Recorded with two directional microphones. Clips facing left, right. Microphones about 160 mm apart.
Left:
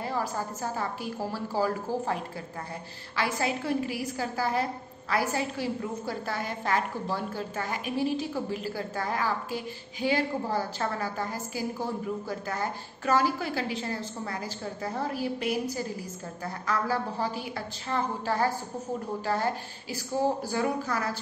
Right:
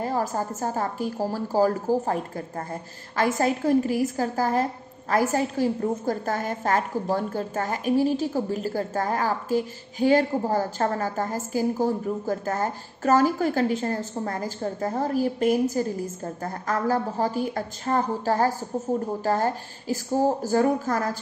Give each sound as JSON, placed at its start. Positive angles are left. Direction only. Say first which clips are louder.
{"t": 0.0, "sound": "a woman's voice", "louder": "right 5 dB", "side_deg": -45}